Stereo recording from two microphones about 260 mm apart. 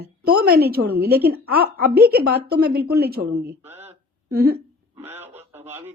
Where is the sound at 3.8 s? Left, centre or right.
Right.